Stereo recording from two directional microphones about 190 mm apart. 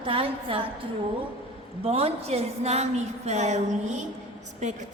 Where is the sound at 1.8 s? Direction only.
30° right (ahead or behind).